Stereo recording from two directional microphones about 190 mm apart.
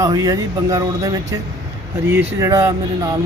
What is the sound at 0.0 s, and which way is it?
Speech, 20° right (ahead or behind).